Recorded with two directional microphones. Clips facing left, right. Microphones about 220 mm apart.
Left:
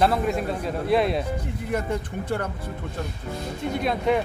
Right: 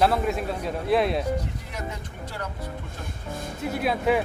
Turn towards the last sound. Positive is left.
turn(degrees=-5)  # may be behind; listen again after turning